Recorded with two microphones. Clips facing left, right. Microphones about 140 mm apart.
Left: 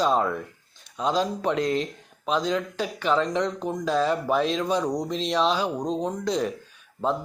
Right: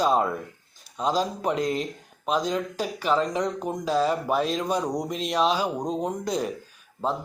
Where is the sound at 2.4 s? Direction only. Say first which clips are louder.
Left 1 dB; 40° right (ahead or behind).